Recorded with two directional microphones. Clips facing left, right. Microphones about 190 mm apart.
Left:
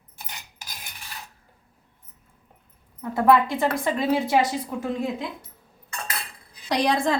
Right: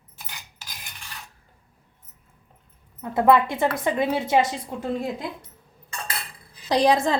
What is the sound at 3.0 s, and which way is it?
A woman's voice, 20° right (ahead or behind).